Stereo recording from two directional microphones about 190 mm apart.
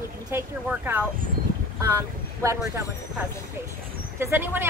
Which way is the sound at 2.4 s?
15° right (ahead or behind).